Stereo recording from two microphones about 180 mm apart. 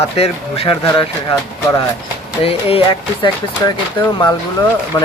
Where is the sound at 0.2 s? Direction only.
35° left (ahead or behind).